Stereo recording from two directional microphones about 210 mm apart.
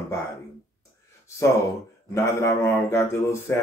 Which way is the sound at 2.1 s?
15° left (ahead or behind).